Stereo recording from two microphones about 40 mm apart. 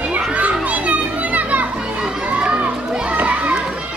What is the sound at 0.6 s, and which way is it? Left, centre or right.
Children playing, right.